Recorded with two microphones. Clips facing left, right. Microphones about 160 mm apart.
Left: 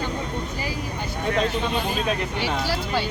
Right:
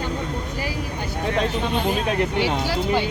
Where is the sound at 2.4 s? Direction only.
20° right (ahead or behind).